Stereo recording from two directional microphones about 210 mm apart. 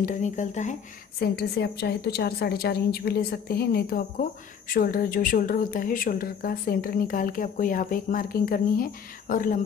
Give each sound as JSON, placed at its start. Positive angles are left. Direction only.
{"t": 0.0, "sound": "speech", "side_deg": 35}
{"t": 1.2, "sound": "a woman's voice", "side_deg": 50}